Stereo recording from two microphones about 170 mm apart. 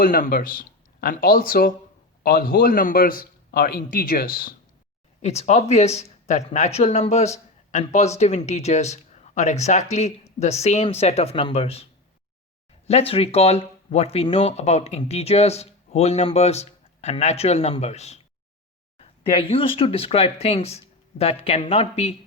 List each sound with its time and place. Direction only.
0.0 s a man's voice: 55° left (ahead or behind)
5.2 s speech: 40° left (ahead or behind)
12.9 s speech: 35° left (ahead or behind)